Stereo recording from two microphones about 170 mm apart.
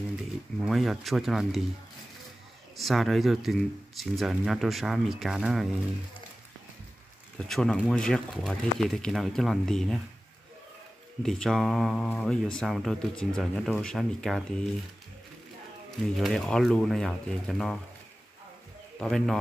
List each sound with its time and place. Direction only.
0.7 s speech: centre (ahead or behind)
2.7 s speech: centre (ahead or behind)
7.3 s speech: 5° left (ahead or behind)
11.2 s speech: centre (ahead or behind)
16.0 s speech: centre (ahead or behind)
18.9 s speech: centre (ahead or behind)